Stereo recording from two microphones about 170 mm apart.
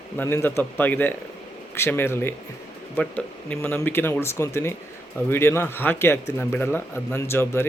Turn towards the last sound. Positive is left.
turn(degrees=15)  # may be behind; listen again after turning